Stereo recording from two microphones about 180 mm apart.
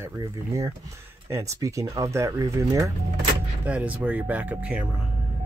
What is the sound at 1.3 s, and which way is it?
Speech, 15° right (ahead or behind).